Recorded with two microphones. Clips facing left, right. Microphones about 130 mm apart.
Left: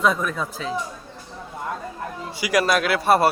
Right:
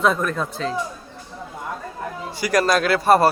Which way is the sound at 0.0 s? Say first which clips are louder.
Right 2 dB; centre (ahead or behind).